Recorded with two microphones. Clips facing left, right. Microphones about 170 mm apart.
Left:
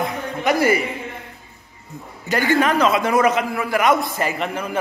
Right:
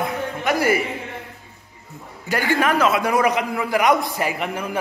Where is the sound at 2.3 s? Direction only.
5° right (ahead or behind).